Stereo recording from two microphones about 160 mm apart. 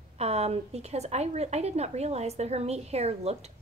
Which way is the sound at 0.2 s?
40° right (ahead or behind).